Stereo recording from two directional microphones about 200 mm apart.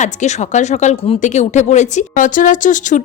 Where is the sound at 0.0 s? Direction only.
35° left (ahead or behind).